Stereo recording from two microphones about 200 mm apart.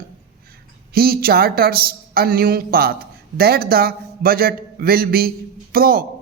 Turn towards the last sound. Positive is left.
turn(degrees=-50)  # may be behind; listen again after turning